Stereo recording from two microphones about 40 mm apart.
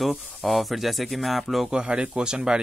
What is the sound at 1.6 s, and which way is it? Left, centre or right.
Speech, right.